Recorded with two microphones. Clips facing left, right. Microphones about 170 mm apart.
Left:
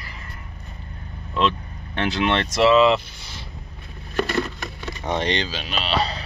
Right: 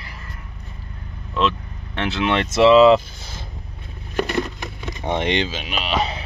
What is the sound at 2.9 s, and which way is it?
Speech, 45° right (ahead or behind).